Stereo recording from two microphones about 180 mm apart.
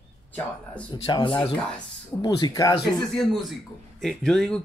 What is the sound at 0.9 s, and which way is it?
Speech, 25° left (ahead or behind).